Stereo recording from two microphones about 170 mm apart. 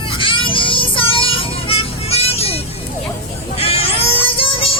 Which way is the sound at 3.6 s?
35° left (ahead or behind).